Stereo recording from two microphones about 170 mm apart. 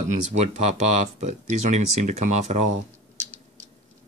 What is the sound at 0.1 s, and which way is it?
Speech, 40° right (ahead or behind).